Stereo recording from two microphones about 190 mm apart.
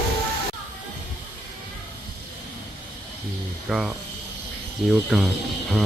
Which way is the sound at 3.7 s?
Centre (ahead or behind).